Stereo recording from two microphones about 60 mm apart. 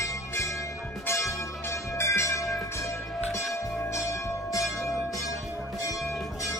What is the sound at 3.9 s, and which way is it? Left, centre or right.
Bell, left.